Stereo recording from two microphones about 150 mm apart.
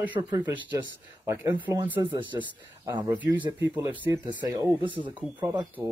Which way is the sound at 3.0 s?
25° right (ahead or behind).